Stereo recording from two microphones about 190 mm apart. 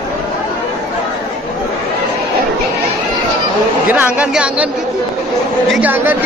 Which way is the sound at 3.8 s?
10° right (ahead or behind).